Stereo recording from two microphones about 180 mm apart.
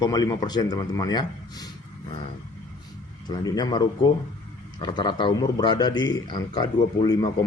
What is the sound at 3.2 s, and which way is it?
A man's voice, 20° left (ahead or behind).